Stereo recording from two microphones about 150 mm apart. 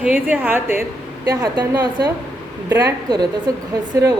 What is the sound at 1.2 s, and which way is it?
A woman's voice, 25° right (ahead or behind).